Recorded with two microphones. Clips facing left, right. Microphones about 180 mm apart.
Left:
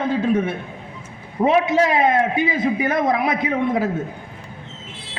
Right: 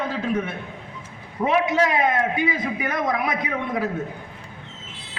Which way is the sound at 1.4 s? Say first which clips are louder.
Left 4 dB; 25° left (ahead or behind).